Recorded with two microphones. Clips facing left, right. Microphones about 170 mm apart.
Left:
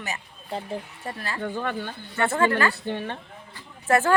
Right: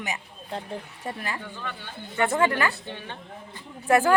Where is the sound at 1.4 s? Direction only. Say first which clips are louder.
Left 9 dB; 50° left (ahead or behind).